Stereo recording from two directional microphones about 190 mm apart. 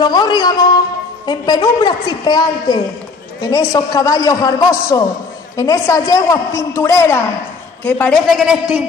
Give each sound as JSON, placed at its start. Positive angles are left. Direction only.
{"t": 0.0, "sound": "a woman's voice", "side_deg": 20}